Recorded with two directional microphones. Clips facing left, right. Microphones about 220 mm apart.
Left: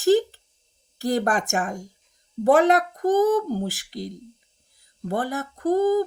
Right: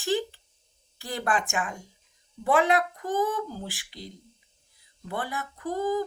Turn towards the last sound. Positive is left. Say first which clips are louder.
# left 8 dB
turn(degrees=40)  # may be behind; listen again after turning